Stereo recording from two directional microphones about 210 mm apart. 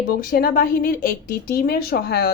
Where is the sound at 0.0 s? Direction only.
45° left (ahead or behind).